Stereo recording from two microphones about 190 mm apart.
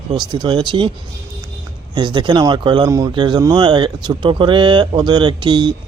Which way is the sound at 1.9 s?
25° right (ahead or behind).